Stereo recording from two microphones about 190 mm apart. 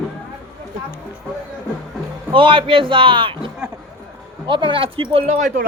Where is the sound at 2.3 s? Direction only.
25° right (ahead or behind).